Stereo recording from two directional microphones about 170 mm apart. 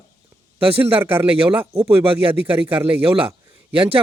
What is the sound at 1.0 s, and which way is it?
Speech, 10° right (ahead or behind).